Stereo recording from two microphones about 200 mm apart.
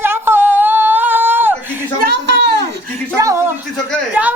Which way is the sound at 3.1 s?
15° right (ahead or behind).